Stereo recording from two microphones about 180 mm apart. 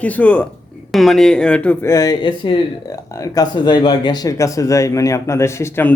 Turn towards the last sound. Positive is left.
turn(degrees=15)  # may be behind; listen again after turning